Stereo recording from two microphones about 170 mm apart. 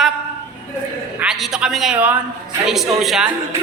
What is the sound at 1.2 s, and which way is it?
A man's voice, 5° right (ahead or behind).